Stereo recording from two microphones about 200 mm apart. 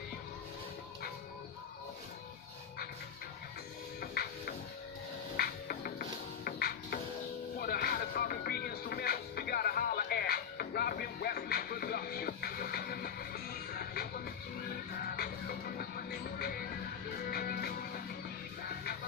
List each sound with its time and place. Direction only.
4.0 s music: 50° left (ahead or behind)
17.3 s music: 50° left (ahead or behind)